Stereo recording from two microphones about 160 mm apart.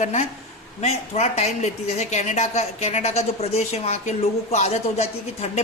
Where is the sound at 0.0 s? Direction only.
50° left (ahead or behind).